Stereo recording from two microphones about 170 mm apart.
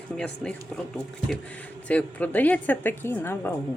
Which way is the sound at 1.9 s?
10° left (ahead or behind).